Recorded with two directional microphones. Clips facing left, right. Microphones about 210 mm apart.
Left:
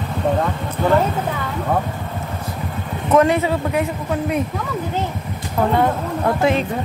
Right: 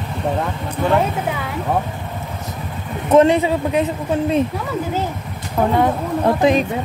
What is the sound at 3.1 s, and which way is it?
Speech, 20° right (ahead or behind).